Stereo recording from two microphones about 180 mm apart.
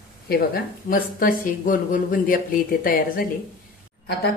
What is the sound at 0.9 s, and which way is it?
Speech, 50° left (ahead or behind).